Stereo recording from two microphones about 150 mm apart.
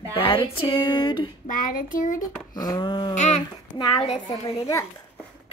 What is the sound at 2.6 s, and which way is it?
Speech, 25° left (ahead or behind).